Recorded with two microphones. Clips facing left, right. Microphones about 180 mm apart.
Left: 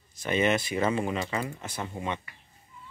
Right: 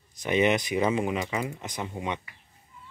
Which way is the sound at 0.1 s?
15° right (ahead or behind).